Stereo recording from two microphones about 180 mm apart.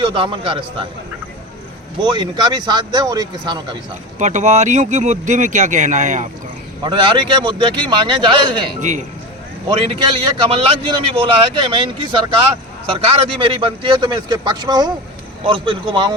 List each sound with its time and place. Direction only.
0.0 s a man's voice: 25° right (ahead or behind)
2.0 s a man's voice: 25° right (ahead or behind)
4.2 s speech: 40° right (ahead or behind)
6.8 s a man's voice: 25° right (ahead or behind)
8.8 s speech: 45° right (ahead or behind)
9.6 s a man's voice: 25° right (ahead or behind)